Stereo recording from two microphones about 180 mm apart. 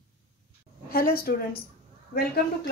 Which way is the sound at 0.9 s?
55° left (ahead or behind).